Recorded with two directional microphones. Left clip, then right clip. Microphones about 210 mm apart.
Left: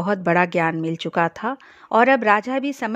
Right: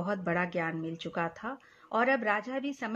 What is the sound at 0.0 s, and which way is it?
Speech, 50° left (ahead or behind).